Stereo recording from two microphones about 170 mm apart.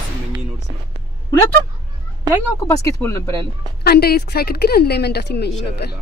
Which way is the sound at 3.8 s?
65° left (ahead or behind).